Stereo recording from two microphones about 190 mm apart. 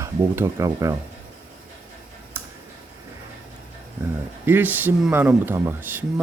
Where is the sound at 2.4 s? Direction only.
10° right (ahead or behind).